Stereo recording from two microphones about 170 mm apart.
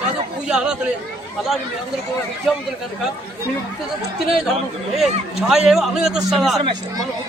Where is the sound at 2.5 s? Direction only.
Centre (ahead or behind).